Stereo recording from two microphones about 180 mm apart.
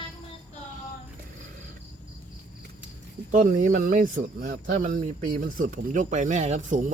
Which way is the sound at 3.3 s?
50° right (ahead or behind).